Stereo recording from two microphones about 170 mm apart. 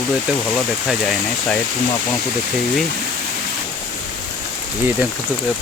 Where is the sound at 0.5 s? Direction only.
Centre (ahead or behind).